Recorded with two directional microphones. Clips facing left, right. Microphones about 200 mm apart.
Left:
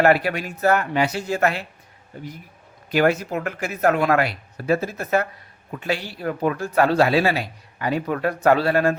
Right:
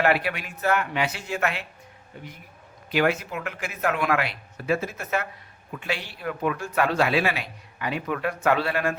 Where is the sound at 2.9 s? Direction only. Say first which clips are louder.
Left 4 dB; 40° left (ahead or behind).